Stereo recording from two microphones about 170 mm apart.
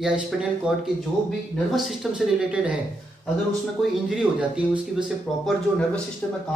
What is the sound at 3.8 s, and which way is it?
Speech, centre (ahead or behind).